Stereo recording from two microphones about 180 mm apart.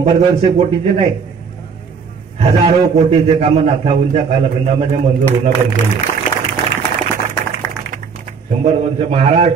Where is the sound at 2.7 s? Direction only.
35° right (ahead or behind).